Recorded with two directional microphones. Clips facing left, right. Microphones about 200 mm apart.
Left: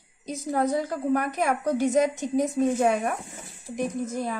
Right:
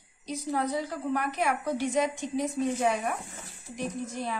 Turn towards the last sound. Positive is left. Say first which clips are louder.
# left 4 dB
turn(degrees=45)  # may be behind; listen again after turning